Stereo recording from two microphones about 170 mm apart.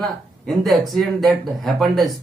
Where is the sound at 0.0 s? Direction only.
Centre (ahead or behind).